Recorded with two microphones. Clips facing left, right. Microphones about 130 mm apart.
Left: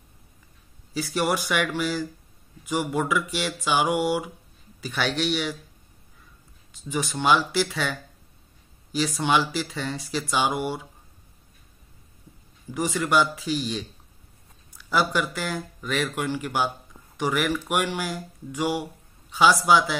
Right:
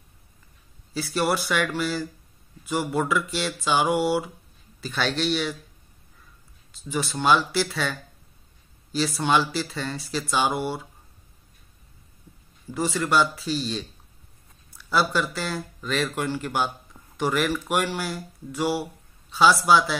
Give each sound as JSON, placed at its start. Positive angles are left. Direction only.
{"t": 0.9, "sound": "speech", "side_deg": 15}
{"t": 6.9, "sound": "speech", "side_deg": 15}
{"t": 12.7, "sound": "speech", "side_deg": 15}